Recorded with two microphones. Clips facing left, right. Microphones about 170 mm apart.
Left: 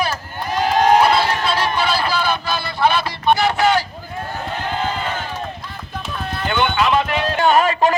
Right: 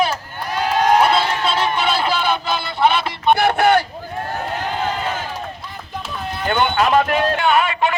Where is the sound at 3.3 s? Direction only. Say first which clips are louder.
Right 2 dB; 55° right (ahead or behind).